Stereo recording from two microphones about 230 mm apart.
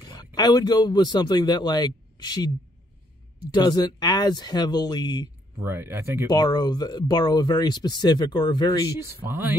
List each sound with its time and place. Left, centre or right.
0.1 s a man's voice: centre
3.5 s speech: centre
5.6 s speech: centre
6.3 s speech: centre
9.3 s speech: centre